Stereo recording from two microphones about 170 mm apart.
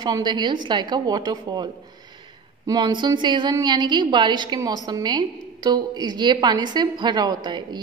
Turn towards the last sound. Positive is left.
turn(degrees=-25)  # may be behind; listen again after turning